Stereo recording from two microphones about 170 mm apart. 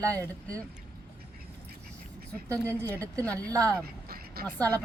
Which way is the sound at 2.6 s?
10° left (ahead or behind).